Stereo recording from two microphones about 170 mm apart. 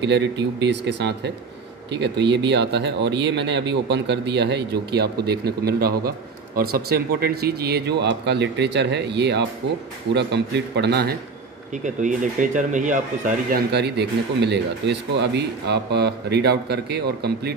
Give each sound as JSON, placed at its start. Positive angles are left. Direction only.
{"t": 0.0, "sound": "speech", "side_deg": -90}
{"t": 11.8, "sound": "speech", "side_deg": -50}